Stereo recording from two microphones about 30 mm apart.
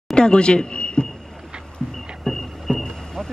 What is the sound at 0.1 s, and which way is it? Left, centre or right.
Speech, left.